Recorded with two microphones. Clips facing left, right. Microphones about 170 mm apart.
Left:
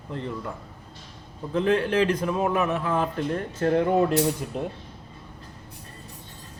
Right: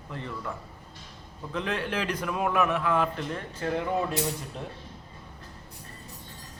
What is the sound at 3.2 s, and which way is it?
Speech, 45° left (ahead or behind).